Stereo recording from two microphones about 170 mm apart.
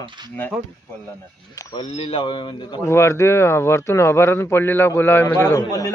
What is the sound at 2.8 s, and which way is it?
Speech, 15° left (ahead or behind).